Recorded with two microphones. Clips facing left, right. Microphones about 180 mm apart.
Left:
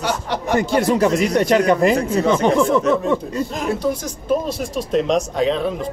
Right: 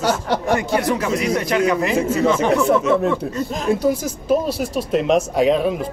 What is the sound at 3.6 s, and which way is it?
Speech, 10° right (ahead or behind).